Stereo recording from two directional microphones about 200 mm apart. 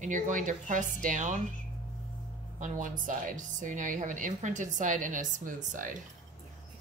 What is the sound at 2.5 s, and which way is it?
A woman's voice, 40° right (ahead or behind).